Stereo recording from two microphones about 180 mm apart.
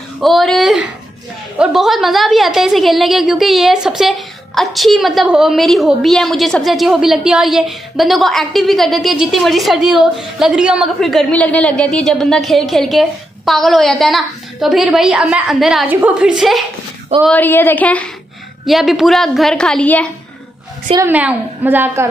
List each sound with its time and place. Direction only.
0.2 s a woman's voice: centre (ahead or behind)
20.9 s a woman's voice: 10° right (ahead or behind)